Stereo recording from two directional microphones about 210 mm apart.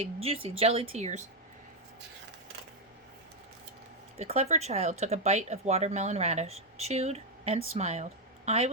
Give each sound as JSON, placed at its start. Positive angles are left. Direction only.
{"t": 0.0, "sound": "speech", "side_deg": -30}
{"t": 4.2, "sound": "speech", "side_deg": -30}